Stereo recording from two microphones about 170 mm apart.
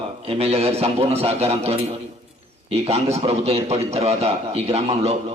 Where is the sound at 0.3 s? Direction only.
35° right (ahead or behind).